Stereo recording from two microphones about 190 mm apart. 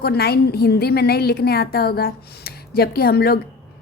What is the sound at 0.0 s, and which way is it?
A woman's voice, 55° left (ahead or behind).